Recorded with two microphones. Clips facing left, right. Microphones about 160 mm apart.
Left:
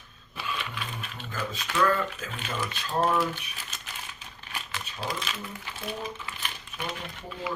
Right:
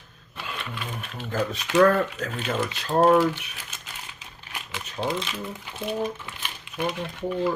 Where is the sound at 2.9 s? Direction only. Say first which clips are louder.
Right 8 dB; 50° right (ahead or behind).